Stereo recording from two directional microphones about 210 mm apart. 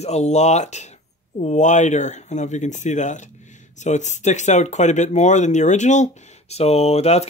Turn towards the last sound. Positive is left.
turn(degrees=30)  # may be behind; listen again after turning